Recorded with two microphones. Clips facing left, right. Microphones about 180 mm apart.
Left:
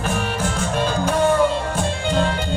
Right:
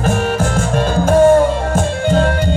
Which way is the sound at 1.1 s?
50° right (ahead or behind).